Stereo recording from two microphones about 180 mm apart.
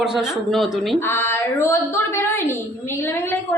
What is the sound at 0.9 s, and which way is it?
A woman's voice, 15° left (ahead or behind).